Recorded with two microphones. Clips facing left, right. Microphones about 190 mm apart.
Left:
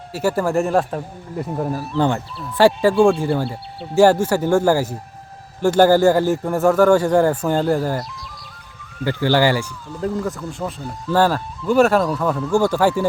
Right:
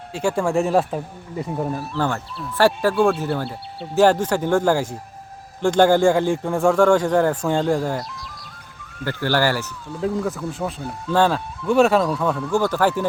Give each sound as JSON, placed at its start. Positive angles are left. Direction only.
{"t": 0.1, "sound": "speech", "side_deg": 5}
{"t": 2.0, "sound": "speech", "side_deg": 20}
{"t": 2.9, "sound": "speech", "side_deg": 0}
{"t": 9.0, "sound": "speech", "side_deg": 15}
{"t": 10.0, "sound": "speech", "side_deg": 0}